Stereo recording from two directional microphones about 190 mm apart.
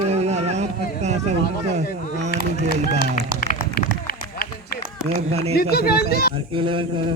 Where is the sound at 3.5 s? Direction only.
50° left (ahead or behind).